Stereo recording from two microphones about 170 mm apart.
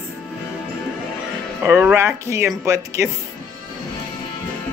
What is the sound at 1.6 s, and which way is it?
Speech, 10° right (ahead or behind).